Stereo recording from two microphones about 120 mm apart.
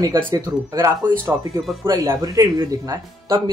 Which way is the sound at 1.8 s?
30° right (ahead or behind).